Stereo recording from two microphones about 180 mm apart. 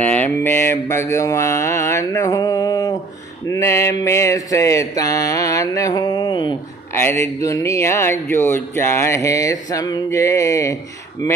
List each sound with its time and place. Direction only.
0.0 s speech: 10° left (ahead or behind)
3.4 s mantra: 15° left (ahead or behind)
6.9 s speech: 15° left (ahead or behind)
11.2 s mantra: 20° left (ahead or behind)